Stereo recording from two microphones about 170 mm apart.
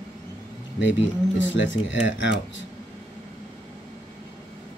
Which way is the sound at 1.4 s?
90° left.